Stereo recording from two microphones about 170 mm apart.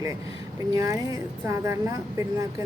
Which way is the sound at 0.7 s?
20° right (ahead or behind).